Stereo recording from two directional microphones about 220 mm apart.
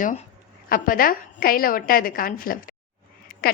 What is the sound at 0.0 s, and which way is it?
A woman's voice, 35° left (ahead or behind).